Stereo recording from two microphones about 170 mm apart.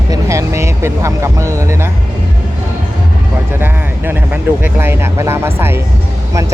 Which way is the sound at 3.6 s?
10° right (ahead or behind).